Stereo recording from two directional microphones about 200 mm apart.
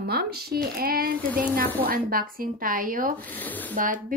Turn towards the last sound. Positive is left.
turn(degrees=-40)  # may be behind; listen again after turning